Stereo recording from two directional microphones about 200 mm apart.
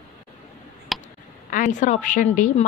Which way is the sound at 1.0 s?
40° left (ahead or behind).